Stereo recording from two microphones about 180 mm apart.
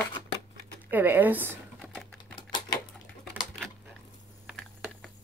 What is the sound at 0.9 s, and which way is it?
Speech, 10° right (ahead or behind).